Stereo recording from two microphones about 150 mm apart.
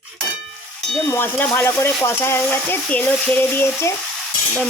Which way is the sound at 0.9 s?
15° left (ahead or behind).